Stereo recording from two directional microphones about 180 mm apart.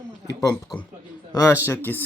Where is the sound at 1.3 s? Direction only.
15° left (ahead or behind).